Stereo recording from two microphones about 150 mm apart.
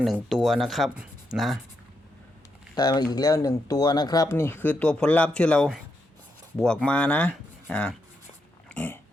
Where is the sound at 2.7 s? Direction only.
25° left (ahead or behind); by 7.9 s 10° left (ahead or behind).